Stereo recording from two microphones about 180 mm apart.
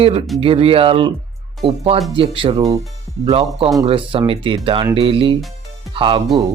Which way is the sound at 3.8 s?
30° right (ahead or behind).